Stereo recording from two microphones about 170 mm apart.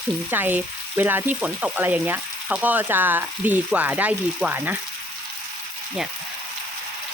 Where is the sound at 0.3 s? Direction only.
10° right (ahead or behind).